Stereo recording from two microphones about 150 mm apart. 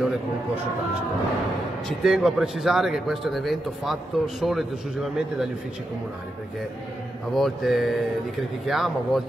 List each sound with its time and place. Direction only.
1.9 s a man's voice: centre (ahead or behind)
7.3 s a man's voice: centre (ahead or behind)